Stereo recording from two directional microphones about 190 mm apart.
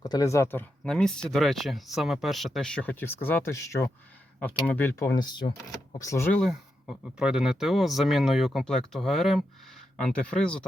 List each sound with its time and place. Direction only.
0.0 s speech: 20° left (ahead or behind)
4.7 s speech: 10° left (ahead or behind)
6.4 s speech: centre (ahead or behind)